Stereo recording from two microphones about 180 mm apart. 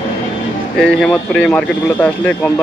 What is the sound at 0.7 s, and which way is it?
Speech, centre (ahead or behind).